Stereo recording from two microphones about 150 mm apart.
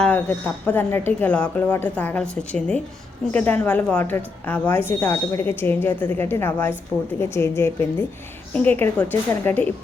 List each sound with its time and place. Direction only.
0.0 s speech: 10° left (ahead or behind)